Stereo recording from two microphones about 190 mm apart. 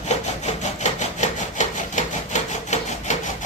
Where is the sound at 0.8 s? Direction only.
40° left (ahead or behind).